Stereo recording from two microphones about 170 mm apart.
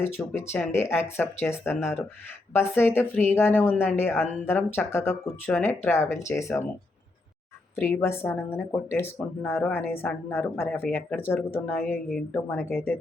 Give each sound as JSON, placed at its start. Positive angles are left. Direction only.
{"t": 0.0, "sound": "speech", "side_deg": 15}
{"t": 7.8, "sound": "speech", "side_deg": 15}
{"t": 12.0, "sound": "a woman's voice", "side_deg": 0}
{"t": 12.5, "sound": "speech", "side_deg": 15}